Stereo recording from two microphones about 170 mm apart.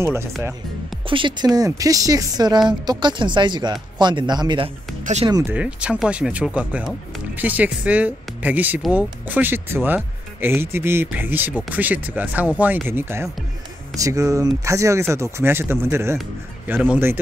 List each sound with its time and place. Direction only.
0.0 s speech: 15° right (ahead or behind)
1.0 s speech: 30° right (ahead or behind)
5.4 s speech: 10° right (ahead or behind)